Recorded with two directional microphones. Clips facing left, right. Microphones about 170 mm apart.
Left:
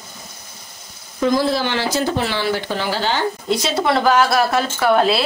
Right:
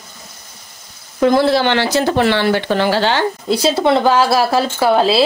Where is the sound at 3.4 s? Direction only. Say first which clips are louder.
Right 5 dB; 30° right (ahead or behind).